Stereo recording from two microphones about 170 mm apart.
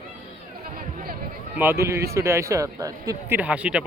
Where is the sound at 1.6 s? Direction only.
15° right (ahead or behind).